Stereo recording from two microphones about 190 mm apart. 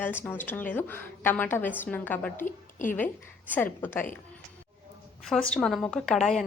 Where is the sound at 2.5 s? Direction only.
40° left (ahead or behind).